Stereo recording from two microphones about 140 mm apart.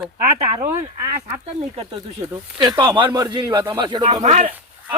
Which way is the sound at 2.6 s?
35° right (ahead or behind).